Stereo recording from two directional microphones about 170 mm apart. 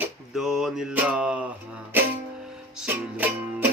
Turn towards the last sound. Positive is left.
turn(degrees=-10)  # may be behind; listen again after turning